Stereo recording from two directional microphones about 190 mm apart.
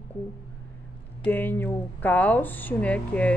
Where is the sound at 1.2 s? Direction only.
10° left (ahead or behind).